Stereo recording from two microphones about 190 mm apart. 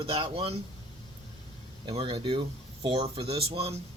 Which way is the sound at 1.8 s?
30° right (ahead or behind).